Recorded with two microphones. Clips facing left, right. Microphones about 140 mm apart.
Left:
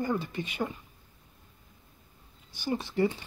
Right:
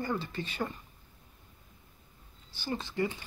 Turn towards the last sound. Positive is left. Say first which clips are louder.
# left 5 dB
turn(degrees=20)  # may be behind; listen again after turning